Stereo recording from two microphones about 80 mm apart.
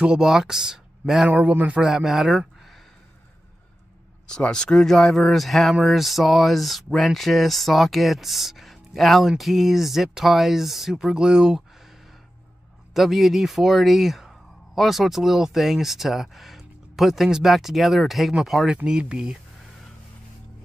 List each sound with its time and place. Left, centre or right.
0.0 s speech: centre
1.3 s a man's voice: right
1.8 s speech: centre
4.3 s speech: centre
12.9 s speech: centre